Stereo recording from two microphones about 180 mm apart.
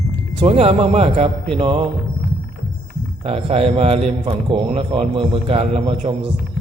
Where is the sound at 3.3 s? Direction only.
30° right (ahead or behind).